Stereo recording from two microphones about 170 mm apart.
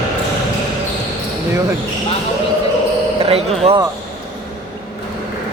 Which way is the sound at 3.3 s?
35° right (ahead or behind).